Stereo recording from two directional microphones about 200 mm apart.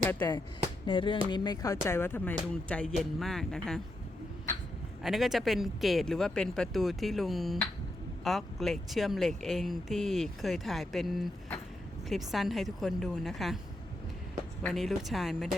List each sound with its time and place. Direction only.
0.1 s speech: 15° left (ahead or behind)
0.9 s music: 25° left (ahead or behind)
1.3 s speech: 20° left (ahead or behind); by 3.8 s centre (ahead or behind)
5.0 s speech: centre (ahead or behind)
14.6 s speech: centre (ahead or behind)